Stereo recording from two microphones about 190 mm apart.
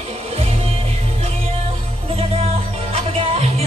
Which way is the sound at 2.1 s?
30° right (ahead or behind).